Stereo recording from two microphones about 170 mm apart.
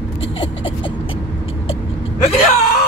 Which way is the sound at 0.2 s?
30° left (ahead or behind).